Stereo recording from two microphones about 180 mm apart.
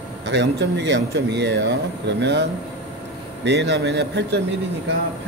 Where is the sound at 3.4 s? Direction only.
75° right (ahead or behind).